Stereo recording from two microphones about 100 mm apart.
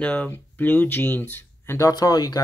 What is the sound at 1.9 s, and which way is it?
Speech, 40° left (ahead or behind).